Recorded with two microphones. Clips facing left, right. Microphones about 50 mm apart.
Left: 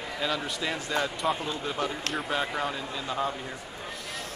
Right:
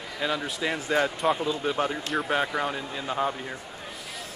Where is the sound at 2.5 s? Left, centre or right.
Centre.